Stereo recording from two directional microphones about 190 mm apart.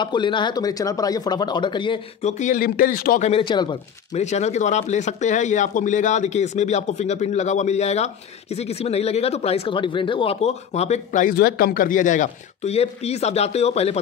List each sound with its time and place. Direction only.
0.0 s speech: 25° left (ahead or behind)
2.3 s speech: 40° left (ahead or behind)
3.3 s speech: 25° left (ahead or behind)
4.1 s speech: 35° left (ahead or behind)